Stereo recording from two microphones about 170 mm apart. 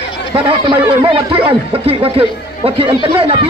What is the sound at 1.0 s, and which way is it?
A man's voice, 30° right (ahead or behind).